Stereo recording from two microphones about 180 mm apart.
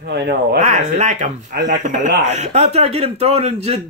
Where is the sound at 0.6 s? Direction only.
40° right (ahead or behind).